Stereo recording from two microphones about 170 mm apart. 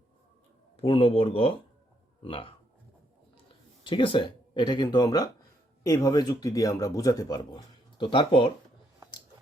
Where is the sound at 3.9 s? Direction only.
30° left (ahead or behind).